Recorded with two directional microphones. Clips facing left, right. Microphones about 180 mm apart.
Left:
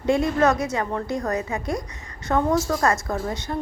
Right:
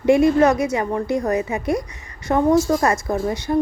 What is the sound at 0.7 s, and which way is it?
A woman's voice, 20° right (ahead or behind).